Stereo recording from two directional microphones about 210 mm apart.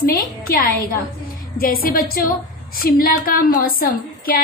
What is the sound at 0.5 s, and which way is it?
A woman's voice, 45° left (ahead or behind).